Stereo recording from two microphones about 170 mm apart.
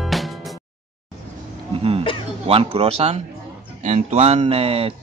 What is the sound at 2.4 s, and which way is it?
A man's voice, 35° right (ahead or behind).